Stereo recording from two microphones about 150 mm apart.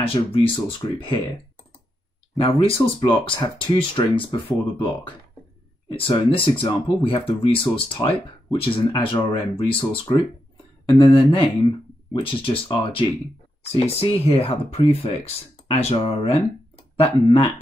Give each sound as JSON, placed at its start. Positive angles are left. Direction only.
{"t": 0.0, "sound": "speech", "side_deg": 40}
{"t": 2.3, "sound": "speech", "side_deg": 40}
{"t": 5.9, "sound": "speech", "side_deg": 35}